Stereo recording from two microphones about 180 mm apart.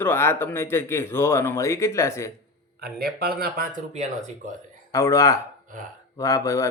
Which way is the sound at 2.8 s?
60° right (ahead or behind).